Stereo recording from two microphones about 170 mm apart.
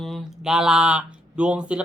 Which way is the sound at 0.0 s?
Centre (ahead or behind).